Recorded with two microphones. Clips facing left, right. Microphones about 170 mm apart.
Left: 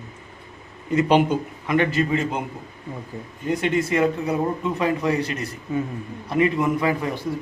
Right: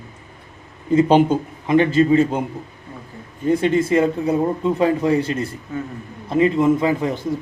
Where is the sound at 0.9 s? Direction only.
30° right (ahead or behind).